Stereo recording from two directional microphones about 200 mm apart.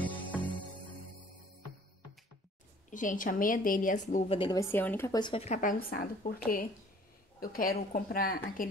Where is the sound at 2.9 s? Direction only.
40° left (ahead or behind).